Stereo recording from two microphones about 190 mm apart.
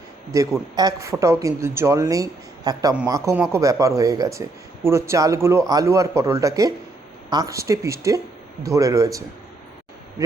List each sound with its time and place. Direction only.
0.3 s speech: 15° right (ahead or behind)